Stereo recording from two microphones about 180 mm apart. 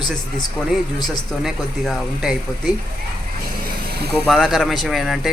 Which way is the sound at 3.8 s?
60° right (ahead or behind).